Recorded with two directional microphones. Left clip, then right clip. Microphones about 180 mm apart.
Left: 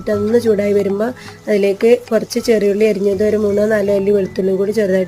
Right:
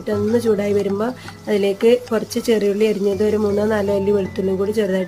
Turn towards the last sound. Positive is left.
turn(degrees=10)  # may be behind; listen again after turning